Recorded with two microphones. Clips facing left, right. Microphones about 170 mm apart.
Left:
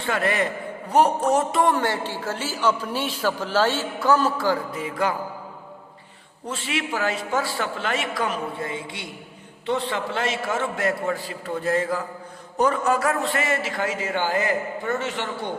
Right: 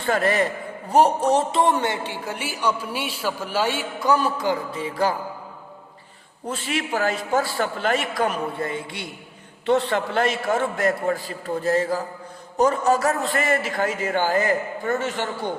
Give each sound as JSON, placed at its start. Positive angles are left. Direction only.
{"t": 0.0, "sound": "a man's voice", "side_deg": -40}
{"t": 6.5, "sound": "a man's voice", "side_deg": -45}